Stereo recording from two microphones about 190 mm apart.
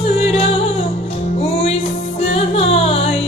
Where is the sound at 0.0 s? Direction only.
30° left (ahead or behind).